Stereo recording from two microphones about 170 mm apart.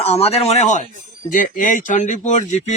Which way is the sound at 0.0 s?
35° left (ahead or behind).